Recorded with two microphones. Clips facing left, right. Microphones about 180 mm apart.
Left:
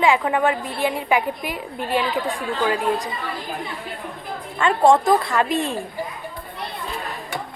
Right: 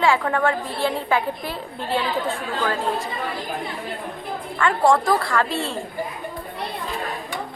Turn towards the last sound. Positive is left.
turn(degrees=15)  # may be behind; listen again after turning